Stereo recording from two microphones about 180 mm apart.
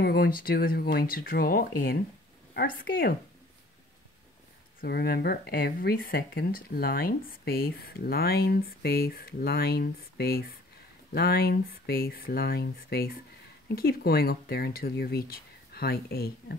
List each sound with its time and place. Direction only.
0.0 s a woman's voice: 60° left (ahead or behind)
4.8 s speech: 60° left (ahead or behind)